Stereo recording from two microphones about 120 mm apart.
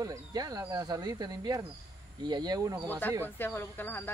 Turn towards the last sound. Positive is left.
turn(degrees=20)  # may be behind; listen again after turning